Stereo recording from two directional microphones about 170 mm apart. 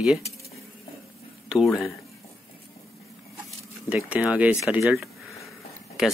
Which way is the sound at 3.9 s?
5° right (ahead or behind).